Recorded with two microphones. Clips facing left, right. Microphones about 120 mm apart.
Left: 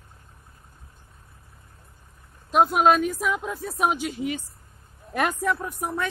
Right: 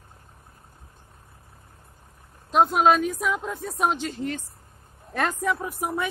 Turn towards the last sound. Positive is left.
turn(degrees=-10)  # may be behind; listen again after turning